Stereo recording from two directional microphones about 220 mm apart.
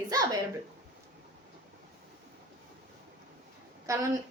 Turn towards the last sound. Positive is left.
turn(degrees=-15)  # may be behind; listen again after turning